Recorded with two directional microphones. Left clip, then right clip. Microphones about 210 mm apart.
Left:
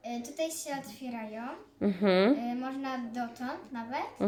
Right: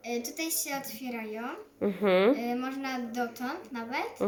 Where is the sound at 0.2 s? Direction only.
15° left (ahead or behind).